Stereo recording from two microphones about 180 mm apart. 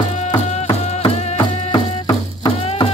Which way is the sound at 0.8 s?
35° left (ahead or behind).